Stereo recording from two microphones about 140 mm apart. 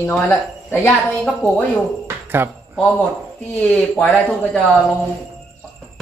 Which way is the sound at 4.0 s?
10° left (ahead or behind).